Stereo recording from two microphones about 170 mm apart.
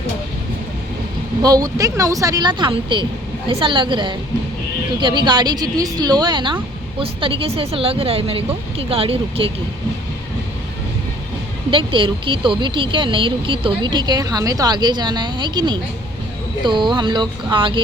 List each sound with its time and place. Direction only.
1.4 s speech: 20° right (ahead or behind)
11.7 s speech: 30° right (ahead or behind)